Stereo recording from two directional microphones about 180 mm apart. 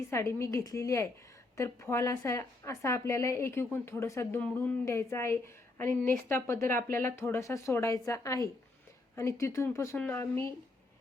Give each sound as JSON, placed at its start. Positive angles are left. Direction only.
{"t": 0.1, "sound": "a woman's voice", "side_deg": 15}